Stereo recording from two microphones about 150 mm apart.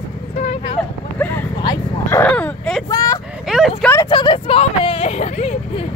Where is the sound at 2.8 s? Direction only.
25° left (ahead or behind).